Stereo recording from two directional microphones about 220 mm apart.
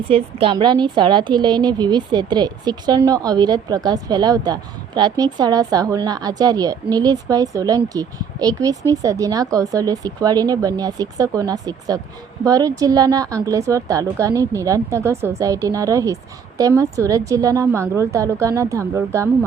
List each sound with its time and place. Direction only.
0.1 s a woman's voice: 25° right (ahead or behind)